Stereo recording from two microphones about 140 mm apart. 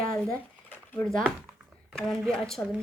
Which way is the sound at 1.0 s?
5° left (ahead or behind).